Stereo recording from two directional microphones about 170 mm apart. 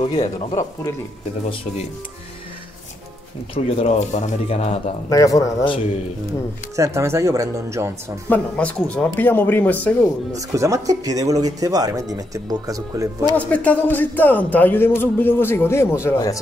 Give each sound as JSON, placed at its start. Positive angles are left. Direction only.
{"t": 0.0, "sound": "speech", "side_deg": 30}
{"t": 3.5, "sound": "speech", "side_deg": 35}
{"t": 5.1, "sound": "speech", "side_deg": 20}
{"t": 6.8, "sound": "speech", "side_deg": -15}
{"t": 8.3, "sound": "speech", "side_deg": 10}
{"t": 10.3, "sound": "speech", "side_deg": -20}
{"t": 13.4, "sound": "speech", "side_deg": 10}